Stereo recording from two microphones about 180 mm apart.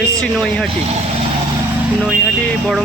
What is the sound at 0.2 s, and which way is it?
Speech, 5° left (ahead or behind).